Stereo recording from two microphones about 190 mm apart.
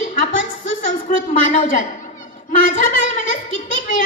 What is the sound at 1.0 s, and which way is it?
A woman's voice, 40° left (ahead or behind).